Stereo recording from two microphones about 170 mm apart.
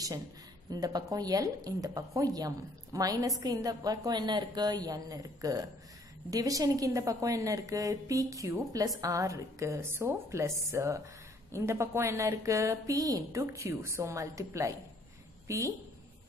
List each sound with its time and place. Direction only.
0.7 s a woman's voice: 25° right (ahead or behind)